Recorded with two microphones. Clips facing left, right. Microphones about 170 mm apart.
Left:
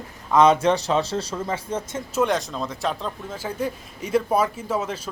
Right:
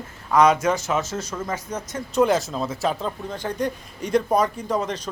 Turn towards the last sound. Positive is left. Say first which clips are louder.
# right 1 dB
turn(degrees=5)  # may be behind; listen again after turning